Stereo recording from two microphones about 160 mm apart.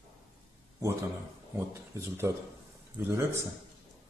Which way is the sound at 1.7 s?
15° right (ahead or behind).